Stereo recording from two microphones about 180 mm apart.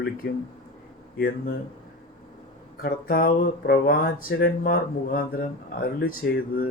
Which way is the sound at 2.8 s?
60° left (ahead or behind).